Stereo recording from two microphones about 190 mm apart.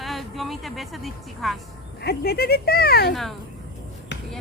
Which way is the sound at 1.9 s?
55° left (ahead or behind).